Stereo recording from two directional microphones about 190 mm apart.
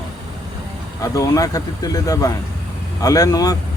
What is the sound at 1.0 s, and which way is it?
Speech, 15° left (ahead or behind).